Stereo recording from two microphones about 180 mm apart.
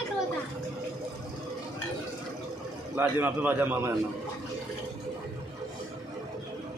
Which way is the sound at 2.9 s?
10° right (ahead or behind).